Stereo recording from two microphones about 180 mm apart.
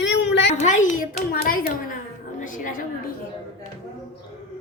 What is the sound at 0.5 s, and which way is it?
A child's voice, 45° left (ahead or behind).